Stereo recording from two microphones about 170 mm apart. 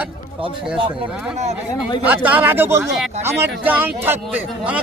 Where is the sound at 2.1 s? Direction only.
10° right (ahead or behind).